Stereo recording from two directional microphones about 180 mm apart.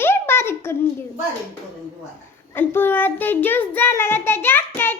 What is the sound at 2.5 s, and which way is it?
Child singing, 10° left (ahead or behind).